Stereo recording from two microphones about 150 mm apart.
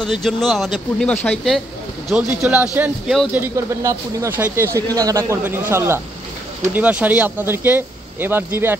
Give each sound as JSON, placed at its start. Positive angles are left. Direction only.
{"t": 0.0, "sound": "speech", "side_deg": 0}
{"t": 2.0, "sound": "speech", "side_deg": -10}